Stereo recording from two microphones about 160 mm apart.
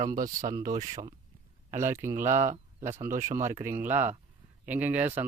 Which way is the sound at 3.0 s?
15° right (ahead or behind).